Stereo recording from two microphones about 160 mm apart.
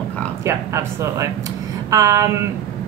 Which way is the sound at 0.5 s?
20° right (ahead or behind).